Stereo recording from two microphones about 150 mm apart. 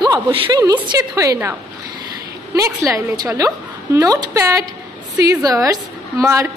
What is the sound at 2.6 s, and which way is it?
A woman's voice, 20° right (ahead or behind).